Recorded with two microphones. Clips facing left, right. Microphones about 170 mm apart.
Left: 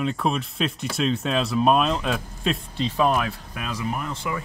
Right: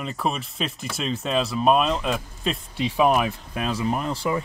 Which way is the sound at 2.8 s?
15° right (ahead or behind).